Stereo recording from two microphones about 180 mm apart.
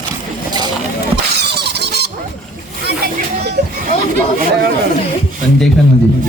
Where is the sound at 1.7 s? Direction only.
65° right (ahead or behind).